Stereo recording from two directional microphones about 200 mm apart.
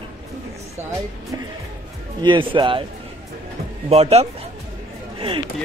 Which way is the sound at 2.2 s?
25° right (ahead or behind).